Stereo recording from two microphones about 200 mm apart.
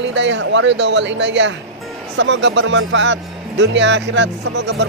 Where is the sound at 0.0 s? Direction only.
65° right (ahead or behind).